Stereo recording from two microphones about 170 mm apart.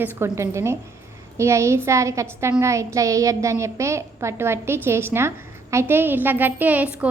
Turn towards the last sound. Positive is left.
turn(degrees=-10)  # may be behind; listen again after turning